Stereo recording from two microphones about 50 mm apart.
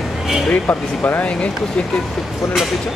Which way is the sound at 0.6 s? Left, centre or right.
Left.